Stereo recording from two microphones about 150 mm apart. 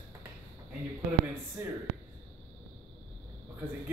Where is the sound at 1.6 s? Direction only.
15° right (ahead or behind).